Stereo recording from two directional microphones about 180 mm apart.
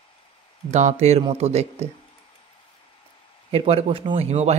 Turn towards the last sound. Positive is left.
turn(degrees=-35)  # may be behind; listen again after turning